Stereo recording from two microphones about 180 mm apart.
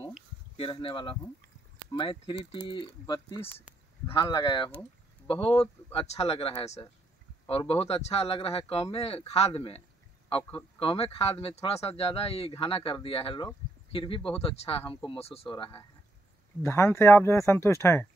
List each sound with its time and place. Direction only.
0.6 s speech: 30° left (ahead or behind)
16.6 s speech: 15° left (ahead or behind)